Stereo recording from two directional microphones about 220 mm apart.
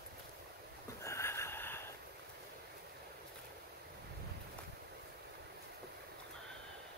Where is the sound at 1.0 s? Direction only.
10° left (ahead or behind).